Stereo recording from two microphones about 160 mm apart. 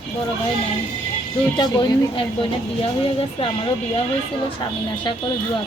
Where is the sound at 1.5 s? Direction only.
25° left (ahead or behind).